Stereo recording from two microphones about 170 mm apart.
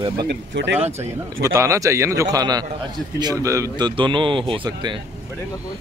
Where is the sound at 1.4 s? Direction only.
20° right (ahead or behind).